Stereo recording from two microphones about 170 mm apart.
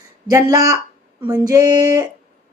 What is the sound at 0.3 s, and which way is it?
Speech, 20° right (ahead or behind).